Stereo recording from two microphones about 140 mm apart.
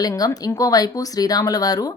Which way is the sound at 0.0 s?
25° left (ahead or behind).